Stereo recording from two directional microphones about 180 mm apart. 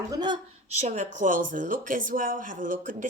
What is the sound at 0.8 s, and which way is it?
Speech, 45° right (ahead or behind).